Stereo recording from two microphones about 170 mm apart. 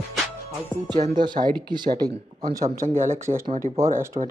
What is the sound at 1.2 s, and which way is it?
Speech, 25° right (ahead or behind).